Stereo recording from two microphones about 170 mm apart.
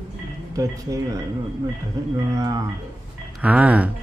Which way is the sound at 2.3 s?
20° right (ahead or behind).